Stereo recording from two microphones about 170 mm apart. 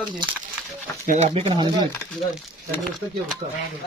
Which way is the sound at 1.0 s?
50° right (ahead or behind).